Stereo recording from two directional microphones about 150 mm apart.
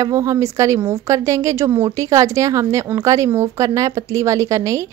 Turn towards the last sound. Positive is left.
turn(degrees=-20)  # may be behind; listen again after turning